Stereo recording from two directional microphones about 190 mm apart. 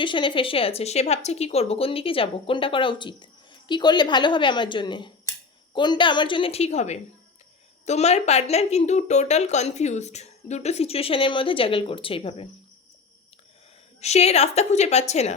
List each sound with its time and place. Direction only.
0.0 s a woman's voice: 25° left (ahead or behind)
14.0 s a woman's voice: 35° left (ahead or behind)